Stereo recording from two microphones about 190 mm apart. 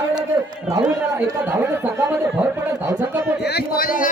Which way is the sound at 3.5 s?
55° left (ahead or behind).